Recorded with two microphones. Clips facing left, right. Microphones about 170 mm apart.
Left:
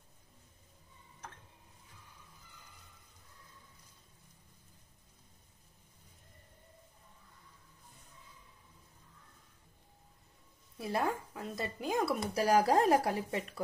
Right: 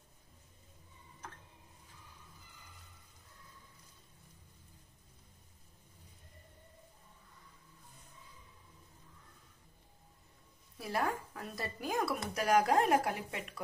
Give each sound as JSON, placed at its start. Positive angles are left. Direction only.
{"t": 10.8, "sound": "speech", "side_deg": 25}